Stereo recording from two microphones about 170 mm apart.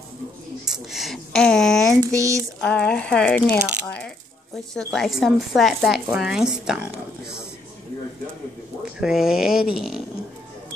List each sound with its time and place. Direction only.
0.7 s speech: centre (ahead or behind)
2.0 s a sound: 20° right (ahead or behind)
2.6 s speech: 5° left (ahead or behind)
9.0 s speech: 5° right (ahead or behind)